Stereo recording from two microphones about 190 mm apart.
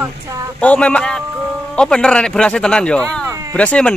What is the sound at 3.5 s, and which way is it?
Speech, 5° left (ahead or behind).